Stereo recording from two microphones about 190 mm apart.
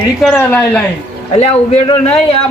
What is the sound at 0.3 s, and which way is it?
Speech, 10° left (ahead or behind).